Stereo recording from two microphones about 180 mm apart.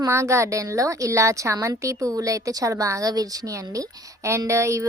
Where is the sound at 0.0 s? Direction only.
15° right (ahead or behind).